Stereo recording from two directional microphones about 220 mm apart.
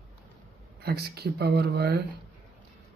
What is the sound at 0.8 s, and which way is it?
Speech, 45° right (ahead or behind).